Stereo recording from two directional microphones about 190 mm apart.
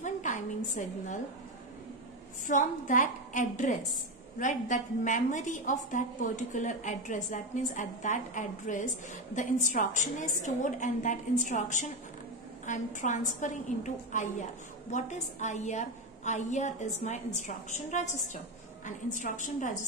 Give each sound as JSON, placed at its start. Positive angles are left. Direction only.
{"t": 0.0, "sound": "a woman's voice", "side_deg": 40}
{"t": 2.4, "sound": "a woman's voice", "side_deg": 45}